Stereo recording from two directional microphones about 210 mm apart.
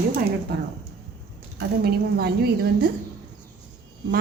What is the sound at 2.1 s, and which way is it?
Speech, 50° right (ahead or behind).